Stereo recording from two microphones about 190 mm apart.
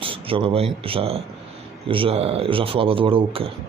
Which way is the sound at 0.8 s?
30° right (ahead or behind).